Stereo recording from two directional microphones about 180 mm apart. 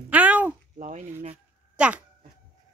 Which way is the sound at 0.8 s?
45° right (ahead or behind).